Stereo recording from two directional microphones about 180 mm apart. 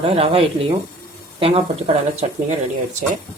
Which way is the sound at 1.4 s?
35° right (ahead or behind).